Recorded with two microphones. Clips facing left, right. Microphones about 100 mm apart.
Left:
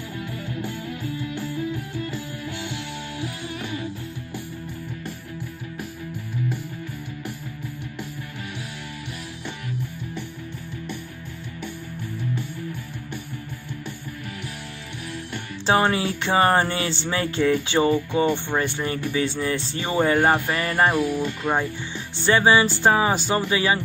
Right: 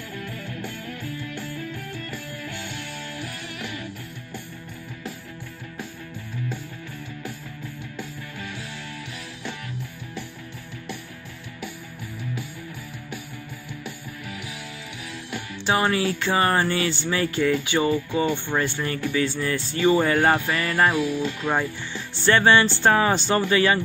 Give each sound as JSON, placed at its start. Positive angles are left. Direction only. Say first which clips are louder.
{"t": 0.2, "sound": "music", "louder": "left 4 dB", "side_deg": 15}
{"t": 15.6, "sound": "music", "louder": "left 2 dB", "side_deg": 30}
{"t": 20.2, "sound": "music", "louder": "left 1 dB", "side_deg": 10}